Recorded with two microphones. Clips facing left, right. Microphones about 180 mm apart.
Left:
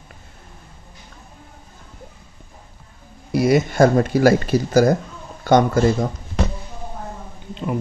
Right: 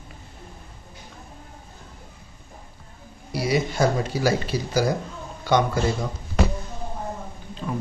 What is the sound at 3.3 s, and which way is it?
Speech, 50° left (ahead or behind).